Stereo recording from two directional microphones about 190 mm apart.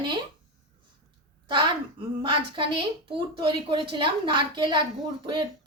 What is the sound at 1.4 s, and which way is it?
A woman's voice, 25° right (ahead or behind).